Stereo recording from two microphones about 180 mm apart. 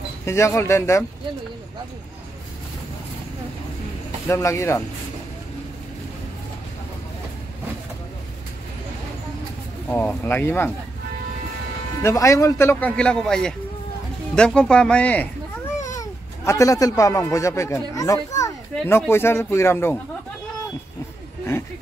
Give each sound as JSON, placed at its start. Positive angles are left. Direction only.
{"t": 0.2, "sound": "speech", "side_deg": 15}
{"t": 4.3, "sound": "speech", "side_deg": 15}
{"t": 9.8, "sound": "speech", "side_deg": 10}
{"t": 12.0, "sound": "speech", "side_deg": 15}